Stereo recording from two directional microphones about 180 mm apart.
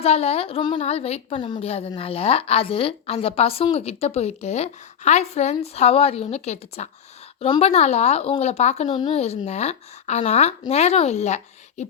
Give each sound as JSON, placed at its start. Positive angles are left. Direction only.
{"t": 0.0, "sound": "a woman's voice", "side_deg": 35}
{"t": 8.9, "sound": "a woman's voice", "side_deg": 25}
{"t": 9.1, "sound": "a woman's voice", "side_deg": 35}